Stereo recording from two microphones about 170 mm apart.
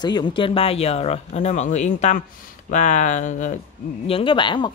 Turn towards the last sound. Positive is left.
turn(degrees=30)  # may be behind; listen again after turning